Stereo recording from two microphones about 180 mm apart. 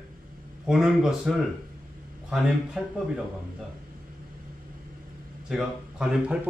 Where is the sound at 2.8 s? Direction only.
Centre (ahead or behind).